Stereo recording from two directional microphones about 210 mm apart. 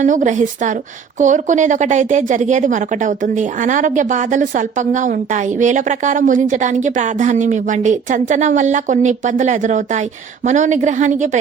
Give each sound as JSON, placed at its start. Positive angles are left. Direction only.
{"t": 0.0, "sound": "a woman's voice", "side_deg": -35}